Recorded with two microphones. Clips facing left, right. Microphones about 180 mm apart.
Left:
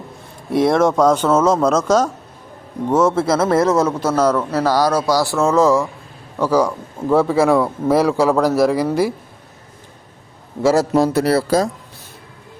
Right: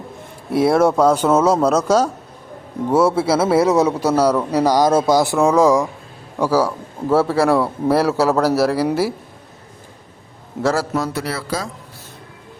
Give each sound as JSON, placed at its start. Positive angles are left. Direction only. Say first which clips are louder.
{"t": 0.5, "sound": "a man's voice", "louder": "even", "side_deg": -5}
{"t": 10.9, "sound": "speech", "louder": "left 8 dB", "side_deg": 35}